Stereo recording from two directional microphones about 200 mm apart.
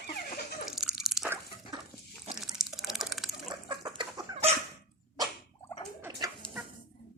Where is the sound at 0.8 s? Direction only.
Centre (ahead or behind).